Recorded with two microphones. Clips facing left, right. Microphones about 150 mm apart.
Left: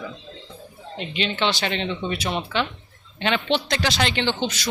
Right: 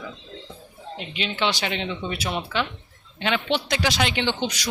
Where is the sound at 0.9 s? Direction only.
5° right (ahead or behind).